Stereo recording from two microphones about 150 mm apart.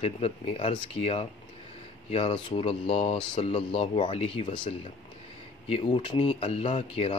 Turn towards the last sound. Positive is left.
turn(degrees=40)  # may be behind; listen again after turning